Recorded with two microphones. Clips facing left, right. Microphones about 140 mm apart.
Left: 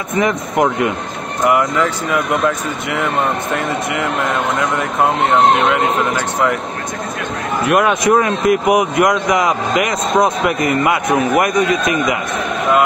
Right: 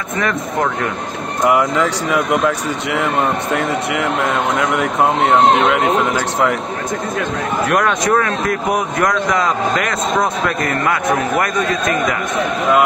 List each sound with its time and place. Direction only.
0.2 s speech: 15° left (ahead or behind)
1.4 s speech: 20° right (ahead or behind)
3.5 s speech: 25° left (ahead or behind)
7.6 s speech: 10° left (ahead or behind)